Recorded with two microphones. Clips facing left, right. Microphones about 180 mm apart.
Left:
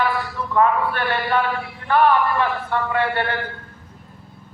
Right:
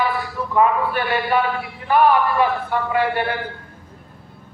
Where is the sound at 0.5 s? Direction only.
10° right (ahead or behind).